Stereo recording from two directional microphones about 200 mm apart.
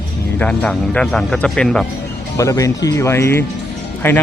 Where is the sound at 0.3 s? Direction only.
5° left (ahead or behind).